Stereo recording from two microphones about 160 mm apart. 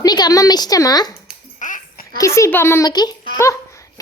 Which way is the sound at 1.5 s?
55° left (ahead or behind).